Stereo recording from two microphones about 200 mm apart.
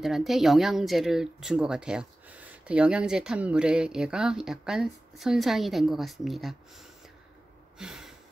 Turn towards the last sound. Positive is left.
turn(degrees=0)  # may be behind; listen again after turning